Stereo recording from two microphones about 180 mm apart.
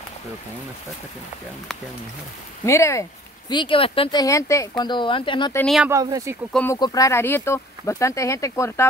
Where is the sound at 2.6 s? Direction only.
15° left (ahead or behind).